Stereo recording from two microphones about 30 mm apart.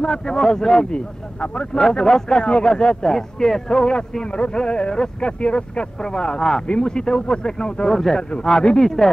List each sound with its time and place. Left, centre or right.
0.0 s speech: left
0.9 s speech: left
1.8 s speech: centre
3.1 s speech: centre
8.2 s speech: left
8.8 s speech: centre